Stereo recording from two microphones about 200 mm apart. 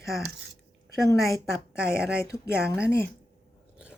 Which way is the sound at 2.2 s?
15° left (ahead or behind).